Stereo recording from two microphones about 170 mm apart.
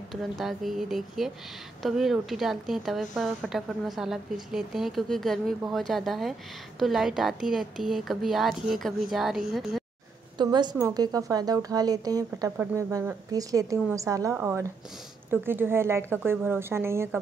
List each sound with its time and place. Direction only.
0.1 s a woman's voice: centre (ahead or behind)
10.3 s a woman's voice: 25° right (ahead or behind)